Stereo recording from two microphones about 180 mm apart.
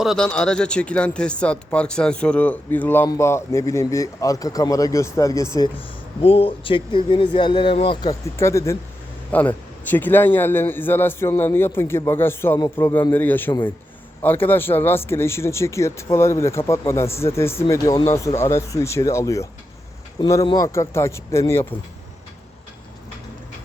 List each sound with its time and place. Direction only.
0.0 s speech: centre (ahead or behind); by 5.7 s 20° left (ahead or behind)
6.2 s speech: 30° left (ahead or behind)
8.4 s speech: 15° left (ahead or behind)